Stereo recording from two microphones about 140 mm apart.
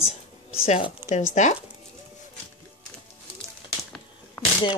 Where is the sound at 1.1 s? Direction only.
60° left (ahead or behind).